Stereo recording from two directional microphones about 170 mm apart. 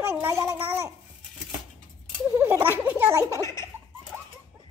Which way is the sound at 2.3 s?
15° right (ahead or behind).